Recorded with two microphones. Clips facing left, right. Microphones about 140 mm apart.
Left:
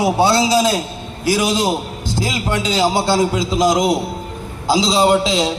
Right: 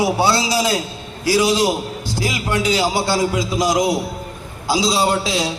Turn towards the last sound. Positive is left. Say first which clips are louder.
# left 4 dB
turn(degrees=25)  # may be behind; listen again after turning